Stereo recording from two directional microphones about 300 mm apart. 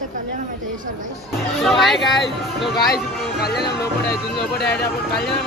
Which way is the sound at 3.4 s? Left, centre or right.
Left.